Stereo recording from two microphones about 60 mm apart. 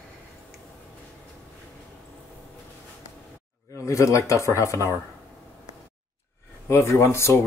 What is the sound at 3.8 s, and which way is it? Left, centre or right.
Speech, left.